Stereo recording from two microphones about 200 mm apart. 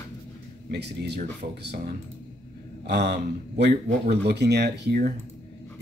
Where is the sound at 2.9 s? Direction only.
55° right (ahead or behind).